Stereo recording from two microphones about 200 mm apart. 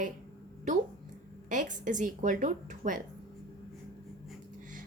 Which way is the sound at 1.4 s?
40° right (ahead or behind).